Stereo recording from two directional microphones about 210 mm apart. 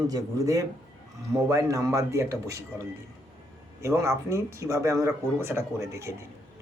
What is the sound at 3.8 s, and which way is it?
A man's voice, 15° right (ahead or behind).